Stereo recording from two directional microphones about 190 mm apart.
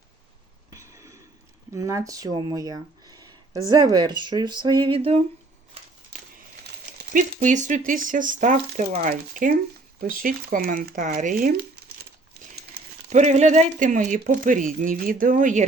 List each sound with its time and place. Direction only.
0.8 s a sound: 15° right (ahead or behind)
1.7 s speech: 15° right (ahead or behind)
7.1 s speech: 40° right (ahead or behind)
13.1 s speech: 35° right (ahead or behind)